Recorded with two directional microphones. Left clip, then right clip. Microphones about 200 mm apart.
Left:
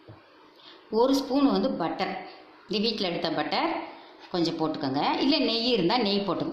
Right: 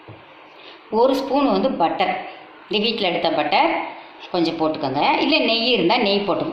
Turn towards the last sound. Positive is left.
turn(degrees=55)  # may be behind; listen again after turning